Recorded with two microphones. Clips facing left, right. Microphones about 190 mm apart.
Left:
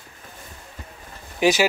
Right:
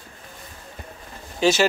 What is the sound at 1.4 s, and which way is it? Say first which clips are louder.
Speech: left 1 dB; 15° left (ahead or behind).